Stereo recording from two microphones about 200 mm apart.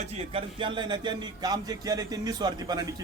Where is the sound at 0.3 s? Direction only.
25° right (ahead or behind).